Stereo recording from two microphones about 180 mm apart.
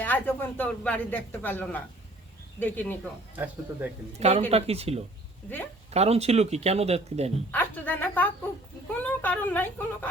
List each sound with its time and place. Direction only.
0.0 s speech: 10° left (ahead or behind)
3.3 s speech: 10° right (ahead or behind)
4.2 s speech: 35° right (ahead or behind)
7.5 s a woman's voice: 10° left (ahead or behind)